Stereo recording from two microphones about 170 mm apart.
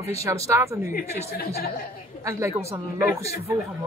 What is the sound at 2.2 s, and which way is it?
Speech, 15° right (ahead or behind).